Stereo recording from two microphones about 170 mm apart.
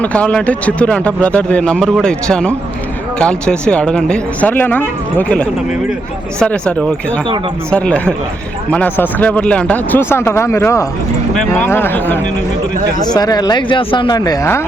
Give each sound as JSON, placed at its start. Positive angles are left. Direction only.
{"t": 0.0, "sound": "speech", "side_deg": 5}
{"t": 13.0, "sound": "speech", "side_deg": 25}